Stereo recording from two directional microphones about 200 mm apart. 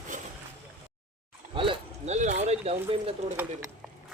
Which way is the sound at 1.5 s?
30° right (ahead or behind).